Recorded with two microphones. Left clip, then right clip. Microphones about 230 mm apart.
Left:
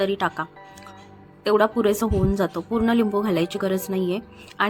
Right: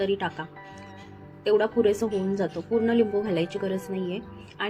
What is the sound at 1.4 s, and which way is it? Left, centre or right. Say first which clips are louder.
A woman's voice: left 3 dB; left.